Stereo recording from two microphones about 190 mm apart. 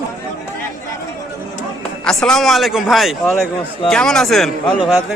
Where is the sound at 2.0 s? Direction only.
5° left (ahead or behind).